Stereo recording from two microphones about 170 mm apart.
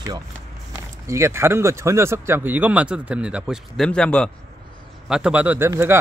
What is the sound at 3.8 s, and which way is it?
A man's voice, 5° left (ahead or behind).